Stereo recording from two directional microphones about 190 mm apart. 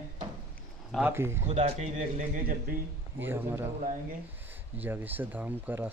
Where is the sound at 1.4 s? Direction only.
35° right (ahead or behind).